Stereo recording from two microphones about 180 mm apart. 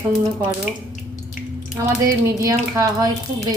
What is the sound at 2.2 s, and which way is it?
A woman's voice, 15° right (ahead or behind).